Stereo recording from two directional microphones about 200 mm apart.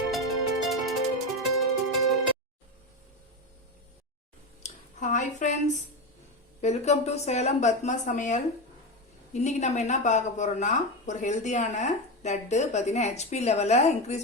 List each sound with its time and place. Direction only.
0.1 s music: centre (ahead or behind)
4.6 s a sound: 40° left (ahead or behind)
6.6 s speech: 35° left (ahead or behind)